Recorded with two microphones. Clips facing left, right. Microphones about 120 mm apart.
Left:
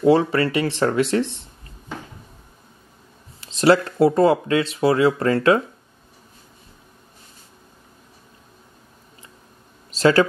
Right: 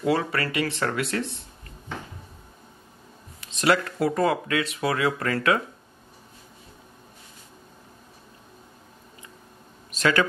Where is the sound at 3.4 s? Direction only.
30° left (ahead or behind).